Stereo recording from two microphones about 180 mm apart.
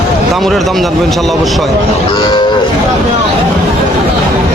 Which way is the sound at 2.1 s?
25° left (ahead or behind).